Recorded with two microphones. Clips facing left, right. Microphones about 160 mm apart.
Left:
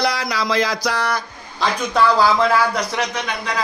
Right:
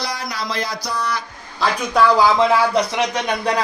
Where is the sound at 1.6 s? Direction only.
15° right (ahead or behind).